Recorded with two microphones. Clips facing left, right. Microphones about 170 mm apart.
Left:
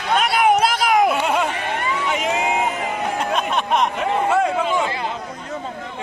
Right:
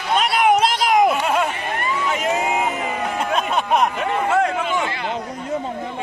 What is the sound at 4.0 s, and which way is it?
Speech, 10° left (ahead or behind).